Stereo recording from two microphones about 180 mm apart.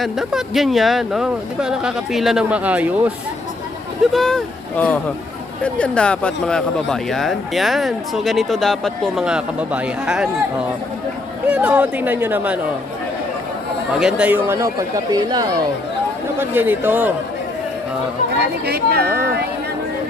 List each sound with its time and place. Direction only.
0.0 s speech: centre (ahead or behind)
4.0 s speech: centre (ahead or behind)
11.4 s speech: 10° right (ahead or behind)
14.0 s speech: 5° right (ahead or behind)
18.6 s speech: 60° right (ahead or behind)